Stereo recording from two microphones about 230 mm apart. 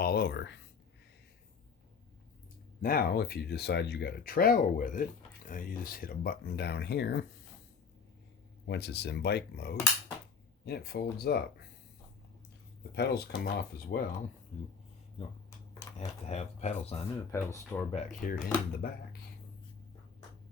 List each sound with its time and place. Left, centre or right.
0.0 s speech: left
2.8 s speech: left
8.6 s speech: left
12.9 s speech: left
16.0 s speech: left
17.3 s speech: centre
17.9 s speech: left
18.3 s speech: centre
18.8 s speech: left